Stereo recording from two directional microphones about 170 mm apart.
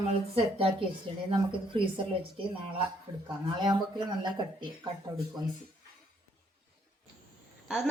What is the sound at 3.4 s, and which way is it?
Speech, 25° right (ahead or behind).